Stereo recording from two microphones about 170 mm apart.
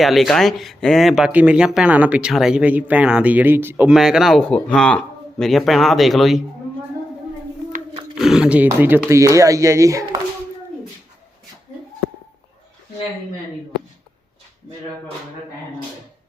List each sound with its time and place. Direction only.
0.0 s speech: centre (ahead or behind)
8.2 s speech: 5° right (ahead or behind); by 10.2 s 20° right (ahead or behind)